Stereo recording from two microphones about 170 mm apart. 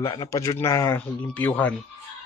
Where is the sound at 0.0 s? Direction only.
25° left (ahead or behind); by 1.8 s 10° left (ahead or behind).